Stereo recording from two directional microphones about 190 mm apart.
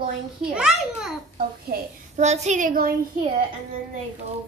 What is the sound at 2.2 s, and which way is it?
Speech, 35° right (ahead or behind).